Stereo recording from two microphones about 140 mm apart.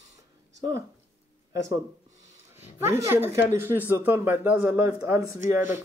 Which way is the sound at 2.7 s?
20° right (ahead or behind).